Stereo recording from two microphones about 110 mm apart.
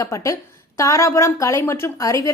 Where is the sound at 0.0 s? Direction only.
25° left (ahead or behind).